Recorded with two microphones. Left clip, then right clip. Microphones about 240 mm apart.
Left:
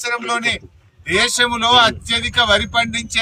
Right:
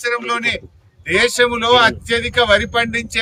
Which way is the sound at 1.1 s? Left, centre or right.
Centre.